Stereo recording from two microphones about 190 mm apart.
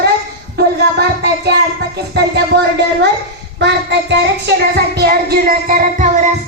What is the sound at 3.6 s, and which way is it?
Child singing, 65° right (ahead or behind).